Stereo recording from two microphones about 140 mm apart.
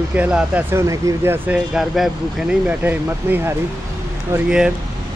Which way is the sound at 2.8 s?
15° right (ahead or behind).